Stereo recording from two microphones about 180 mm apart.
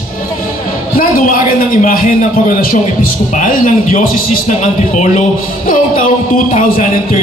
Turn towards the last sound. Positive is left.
turn(degrees=45)  # may be behind; listen again after turning